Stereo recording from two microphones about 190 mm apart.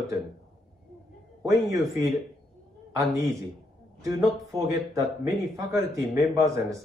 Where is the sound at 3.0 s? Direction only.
Centre (ahead or behind).